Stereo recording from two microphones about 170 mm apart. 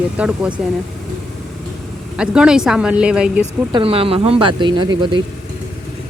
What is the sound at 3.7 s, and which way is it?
Speech, 30° right (ahead or behind).